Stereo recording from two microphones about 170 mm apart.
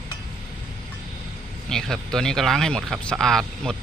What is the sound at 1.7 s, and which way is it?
Speech, 5° left (ahead or behind).